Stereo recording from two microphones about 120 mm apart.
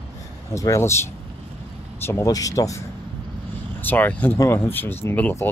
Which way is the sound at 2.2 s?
30° left (ahead or behind).